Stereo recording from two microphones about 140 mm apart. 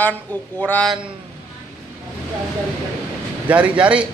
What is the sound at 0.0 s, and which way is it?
Speech, 15° left (ahead or behind).